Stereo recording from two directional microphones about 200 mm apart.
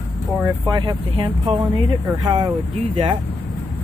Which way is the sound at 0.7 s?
20° right (ahead or behind).